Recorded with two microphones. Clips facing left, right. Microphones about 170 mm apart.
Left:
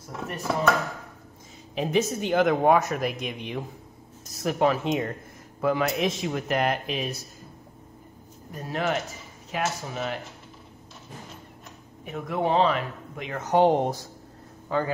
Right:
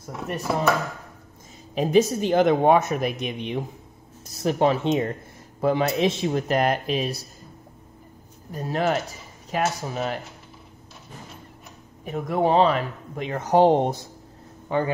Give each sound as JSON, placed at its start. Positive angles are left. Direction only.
{"t": 1.8, "sound": "speech", "side_deg": -35}
{"t": 8.5, "sound": "speech", "side_deg": -35}
{"t": 12.0, "sound": "speech", "side_deg": -35}